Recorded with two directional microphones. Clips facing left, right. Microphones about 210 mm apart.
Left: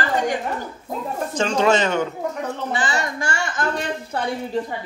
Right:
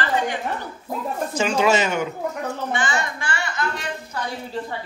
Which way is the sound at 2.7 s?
35° left (ahead or behind).